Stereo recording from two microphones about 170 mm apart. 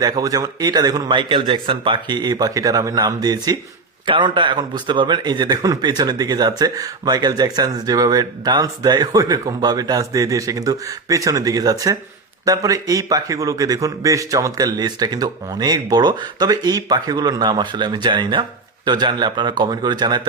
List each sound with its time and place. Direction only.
0.0 s speech: 20° right (ahead or behind)